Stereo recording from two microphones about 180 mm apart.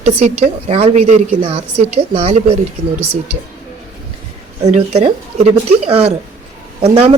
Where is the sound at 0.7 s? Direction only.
35° right (ahead or behind).